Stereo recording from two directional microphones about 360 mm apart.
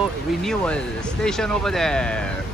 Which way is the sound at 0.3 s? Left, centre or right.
Centre.